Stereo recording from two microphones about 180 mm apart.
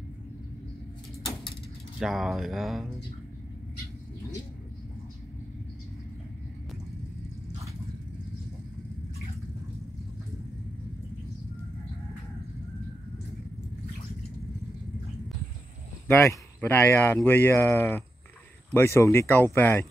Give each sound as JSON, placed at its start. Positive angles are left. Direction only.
{"t": 2.0, "sound": "speech", "side_deg": 0}
{"t": 16.1, "sound": "speech", "side_deg": 10}